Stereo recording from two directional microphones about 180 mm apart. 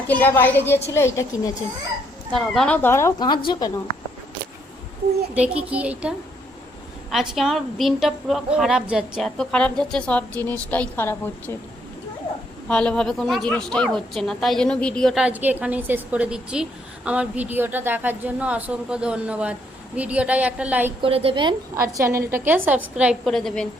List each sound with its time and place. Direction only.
0.1 s speech: 10° left (ahead or behind)
2.3 s speech: centre (ahead or behind); by 3.7 s 25° left (ahead or behind)
5.3 s a woman's voice: 5° right (ahead or behind); by 11.5 s 15° left (ahead or behind)
12.6 s a woman's voice: 5° left (ahead or behind)
21.0 s a woman's voice: 30° right (ahead or behind)
21.8 s a woman's voice: 15° right (ahead or behind); by 23.6 s centre (ahead or behind)